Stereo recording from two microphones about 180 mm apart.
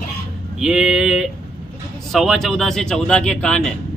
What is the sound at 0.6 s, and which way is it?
Speech, centre (ahead or behind).